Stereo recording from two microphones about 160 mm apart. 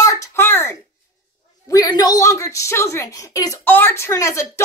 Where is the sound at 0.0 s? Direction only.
20° left (ahead or behind).